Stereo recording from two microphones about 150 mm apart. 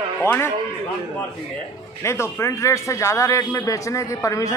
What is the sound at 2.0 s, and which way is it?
A man's voice, 20° left (ahead or behind).